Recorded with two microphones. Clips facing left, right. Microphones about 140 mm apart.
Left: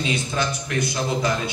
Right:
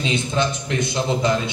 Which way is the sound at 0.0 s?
25° right (ahead or behind).